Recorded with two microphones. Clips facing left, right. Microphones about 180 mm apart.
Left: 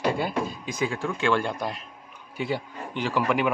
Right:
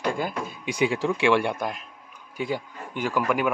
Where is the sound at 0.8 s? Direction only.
85° right.